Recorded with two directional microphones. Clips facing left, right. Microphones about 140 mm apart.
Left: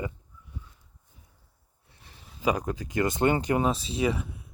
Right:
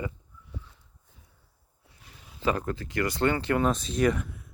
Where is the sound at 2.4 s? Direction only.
15° left (ahead or behind).